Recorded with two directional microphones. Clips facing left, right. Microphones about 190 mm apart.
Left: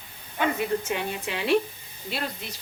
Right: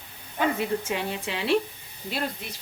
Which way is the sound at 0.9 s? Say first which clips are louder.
Even; 30° right (ahead or behind).